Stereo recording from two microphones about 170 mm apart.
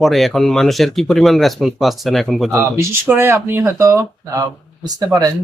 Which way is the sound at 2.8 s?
15° right (ahead or behind).